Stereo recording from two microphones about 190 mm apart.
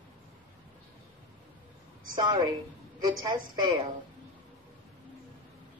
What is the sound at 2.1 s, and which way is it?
Speech, 20° right (ahead or behind).